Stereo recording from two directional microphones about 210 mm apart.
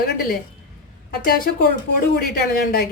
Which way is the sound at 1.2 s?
45° left (ahead or behind).